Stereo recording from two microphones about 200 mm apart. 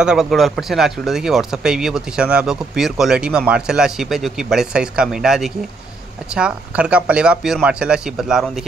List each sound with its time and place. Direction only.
0.0 s speech: 5° right (ahead or behind)